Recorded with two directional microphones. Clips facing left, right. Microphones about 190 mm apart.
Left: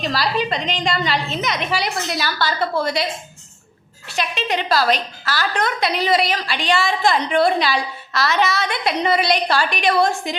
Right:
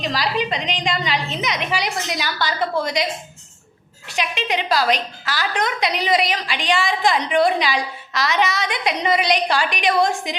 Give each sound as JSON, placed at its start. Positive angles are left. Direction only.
{"t": 0.0, "sound": "a woman's voice", "side_deg": -15}
{"t": 4.1, "sound": "a woman's voice", "side_deg": -15}